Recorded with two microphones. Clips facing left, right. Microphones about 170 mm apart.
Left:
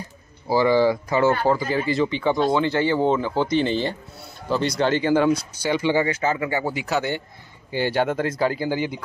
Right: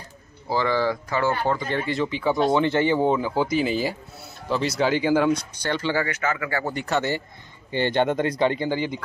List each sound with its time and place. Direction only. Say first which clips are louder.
0.5 s speech: left 5 dB; 10° left (ahead or behind)
1.4 s speech: left 3 dB; 5° left (ahead or behind)
2.4 s speech: right 2 dB; 20° right (ahead or behind); by 6.0 s 15° left (ahead or behind)
6.0 s speech: left 4 dB; 25° left (ahead or behind)
6.6 s speech: left 1 dB; 5° left (ahead or behind)